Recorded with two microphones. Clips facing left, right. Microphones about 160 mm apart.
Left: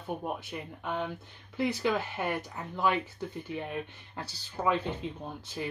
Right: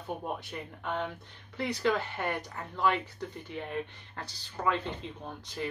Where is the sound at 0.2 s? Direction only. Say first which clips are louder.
Left 1 dB; 5° left (ahead or behind).